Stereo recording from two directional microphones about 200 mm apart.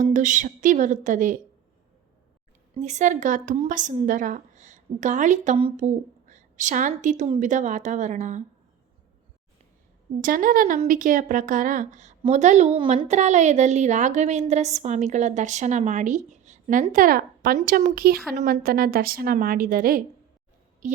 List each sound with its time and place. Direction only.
0.0 s speech: 40° right (ahead or behind)
2.8 s speech: 35° right (ahead or behind)
10.2 s a woman's voice: 45° right (ahead or behind)